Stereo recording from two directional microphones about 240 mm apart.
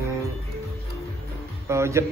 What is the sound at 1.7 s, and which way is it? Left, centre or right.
Speech, centre.